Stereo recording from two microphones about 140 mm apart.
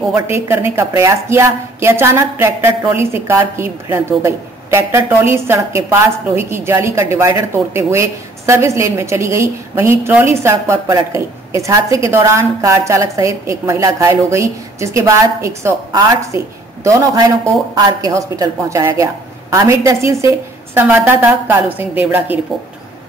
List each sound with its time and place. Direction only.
0.1 s a woman's voice: 15° right (ahead or behind)